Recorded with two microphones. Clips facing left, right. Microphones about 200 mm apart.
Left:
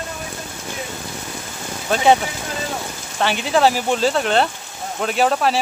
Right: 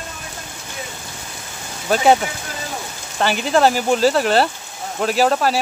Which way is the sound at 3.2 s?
Centre (ahead or behind).